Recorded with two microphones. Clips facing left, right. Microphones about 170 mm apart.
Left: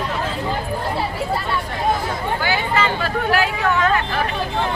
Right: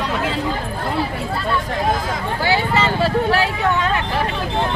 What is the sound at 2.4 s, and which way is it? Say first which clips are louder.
Vehicle: right 3 dB; 30° right (ahead or behind).